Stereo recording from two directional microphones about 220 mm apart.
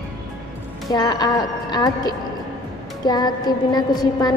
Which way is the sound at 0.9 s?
20° left (ahead or behind).